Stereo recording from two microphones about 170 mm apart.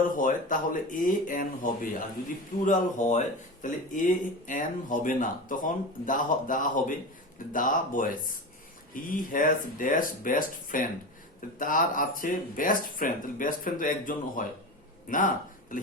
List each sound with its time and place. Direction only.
0.2 s speech: 55° left (ahead or behind)
9.1 s speech: 50° left (ahead or behind)